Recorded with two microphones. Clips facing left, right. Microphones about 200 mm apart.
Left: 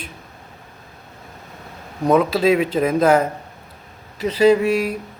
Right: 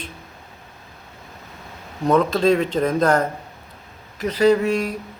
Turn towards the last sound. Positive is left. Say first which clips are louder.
# left 2 dB
turn(degrees=10)  # may be behind; listen again after turning